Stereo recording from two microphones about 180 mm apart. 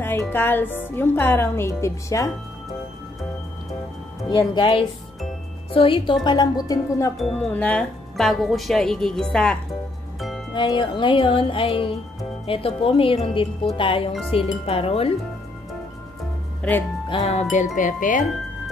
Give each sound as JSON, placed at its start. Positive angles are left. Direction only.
{"t": 0.0, "sound": "speech", "side_deg": 10}
{"t": 4.3, "sound": "speech", "side_deg": 25}
{"t": 7.2, "sound": "speech", "side_deg": 0}
{"t": 10.5, "sound": "speech", "side_deg": 25}
{"t": 14.3, "sound": "wind chime", "side_deg": 30}
{"t": 16.6, "sound": "speech", "side_deg": 5}
{"t": 17.3, "sound": "wind chime", "side_deg": 40}
{"t": 17.7, "sound": "speech", "side_deg": 45}